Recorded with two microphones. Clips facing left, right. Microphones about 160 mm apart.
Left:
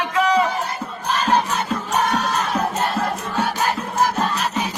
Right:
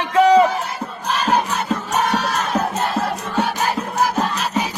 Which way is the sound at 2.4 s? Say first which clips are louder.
Right 1 dB; 10° right (ahead or behind).